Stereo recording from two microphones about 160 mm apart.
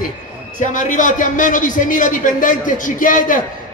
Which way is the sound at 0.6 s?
55° left (ahead or behind).